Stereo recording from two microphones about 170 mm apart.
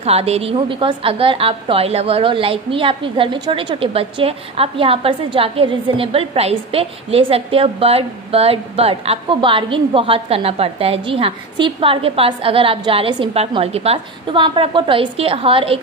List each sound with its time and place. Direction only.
0.0 s a woman's voice: 35° right (ahead or behind)